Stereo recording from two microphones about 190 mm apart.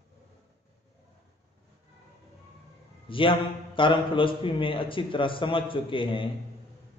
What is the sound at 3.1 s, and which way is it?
A man's voice, 25° left (ahead or behind).